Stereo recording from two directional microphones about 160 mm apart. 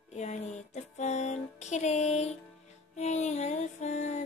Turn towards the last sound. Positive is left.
turn(degrees=45)  # may be behind; listen again after turning